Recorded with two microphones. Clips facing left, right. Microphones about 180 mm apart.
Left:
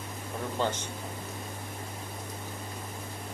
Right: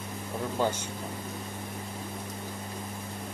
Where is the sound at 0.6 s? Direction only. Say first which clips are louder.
Right 2 dB; 10° right (ahead or behind).